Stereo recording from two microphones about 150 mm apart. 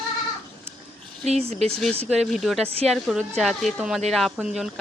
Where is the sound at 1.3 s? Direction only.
45° right (ahead or behind).